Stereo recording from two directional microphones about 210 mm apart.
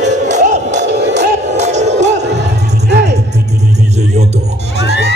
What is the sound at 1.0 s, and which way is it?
Music, 55° right (ahead or behind).